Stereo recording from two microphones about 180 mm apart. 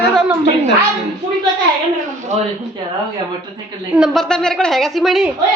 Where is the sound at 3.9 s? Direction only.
Centre (ahead or behind).